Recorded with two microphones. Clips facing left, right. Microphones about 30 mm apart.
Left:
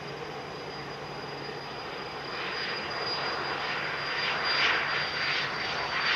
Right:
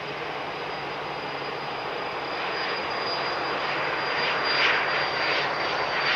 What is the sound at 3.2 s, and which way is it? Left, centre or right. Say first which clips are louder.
Vehicle: right 4 dB; centre.